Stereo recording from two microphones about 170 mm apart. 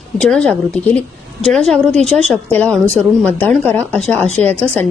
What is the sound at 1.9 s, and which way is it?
Speech, 40° right (ahead or behind).